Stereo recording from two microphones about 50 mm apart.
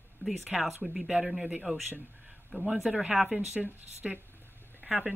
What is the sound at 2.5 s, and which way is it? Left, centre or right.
Speech, right.